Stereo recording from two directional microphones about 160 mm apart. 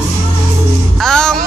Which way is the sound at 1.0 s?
5° left (ahead or behind).